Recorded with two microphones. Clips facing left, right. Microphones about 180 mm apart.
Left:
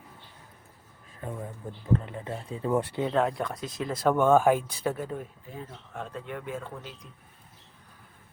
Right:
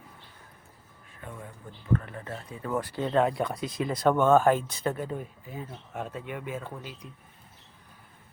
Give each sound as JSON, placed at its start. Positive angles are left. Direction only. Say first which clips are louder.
{"t": 1.2, "sound": "speech", "louder": "left 6 dB", "side_deg": 35}
{"t": 1.9, "sound": "speech", "louder": "left 1 dB", "side_deg": 20}
{"t": 3.1, "sound": "speech", "louder": "right 4 dB", "side_deg": 0}